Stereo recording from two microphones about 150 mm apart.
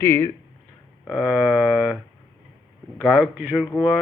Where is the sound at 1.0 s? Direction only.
5° right (ahead or behind).